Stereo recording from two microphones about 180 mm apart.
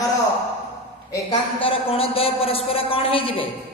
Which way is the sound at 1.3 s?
30° left (ahead or behind).